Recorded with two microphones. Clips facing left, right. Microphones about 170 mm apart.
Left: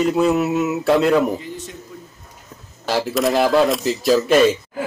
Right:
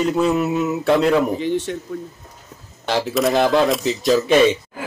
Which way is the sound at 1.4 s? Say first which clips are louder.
Right 11 dB; 80° right.